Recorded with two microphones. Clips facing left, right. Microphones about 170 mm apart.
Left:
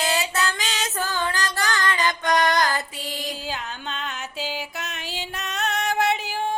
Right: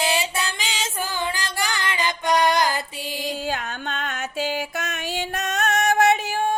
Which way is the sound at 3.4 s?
50° right (ahead or behind).